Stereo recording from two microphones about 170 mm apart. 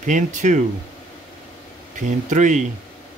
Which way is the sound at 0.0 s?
45° right (ahead or behind).